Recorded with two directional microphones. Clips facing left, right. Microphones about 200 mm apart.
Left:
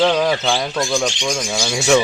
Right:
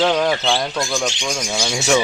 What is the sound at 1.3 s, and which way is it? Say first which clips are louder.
Speech: left 1 dB; 5° right (ahead or behind).